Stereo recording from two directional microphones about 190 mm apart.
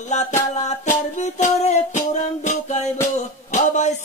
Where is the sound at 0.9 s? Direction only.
35° left (ahead or behind).